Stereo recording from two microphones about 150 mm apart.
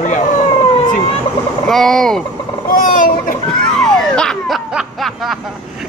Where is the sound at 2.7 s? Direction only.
65° left (ahead or behind).